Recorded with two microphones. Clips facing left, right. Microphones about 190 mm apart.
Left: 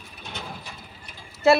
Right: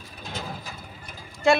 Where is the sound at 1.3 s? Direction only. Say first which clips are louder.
Left 2 dB; 5° left (ahead or behind).